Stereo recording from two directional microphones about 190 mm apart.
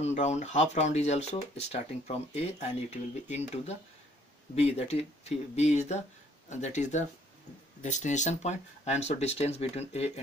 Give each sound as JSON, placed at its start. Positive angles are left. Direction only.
{"t": 0.0, "sound": "speech", "side_deg": 35}